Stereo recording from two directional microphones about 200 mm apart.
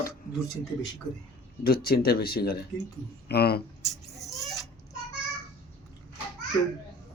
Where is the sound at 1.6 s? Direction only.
50° left (ahead or behind).